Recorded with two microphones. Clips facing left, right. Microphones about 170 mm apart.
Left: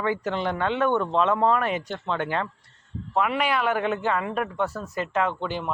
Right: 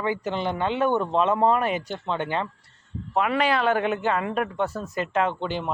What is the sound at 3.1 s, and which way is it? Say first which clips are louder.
Speech: right 1 dB; 30° right (ahead or behind).